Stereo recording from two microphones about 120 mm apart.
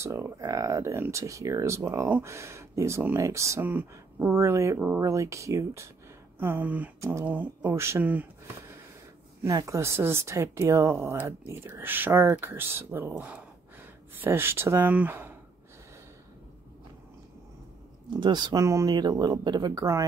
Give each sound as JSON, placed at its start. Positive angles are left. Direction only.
{"t": 0.0, "sound": "a woman's voice", "side_deg": -20}
{"t": 4.7, "sound": "speech", "side_deg": -10}
{"t": 5.0, "sound": "a woman's voice", "side_deg": -25}
{"t": 6.4, "sound": "speech", "side_deg": -15}
{"t": 7.0, "sound": "speech", "side_deg": -25}
{"t": 7.2, "sound": "speech", "side_deg": -15}
{"t": 9.4, "sound": "a woman's voice", "side_deg": -25}
{"t": 18.2, "sound": "speech", "side_deg": -35}